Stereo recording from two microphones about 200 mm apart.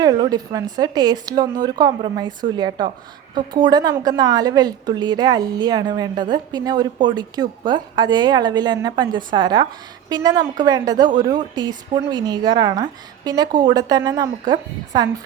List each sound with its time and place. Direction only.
0.0 s a woman's voice: 20° right (ahead or behind)